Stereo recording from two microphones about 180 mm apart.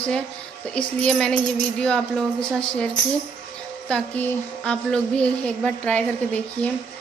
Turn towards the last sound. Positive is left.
turn(degrees=5)  # may be behind; listen again after turning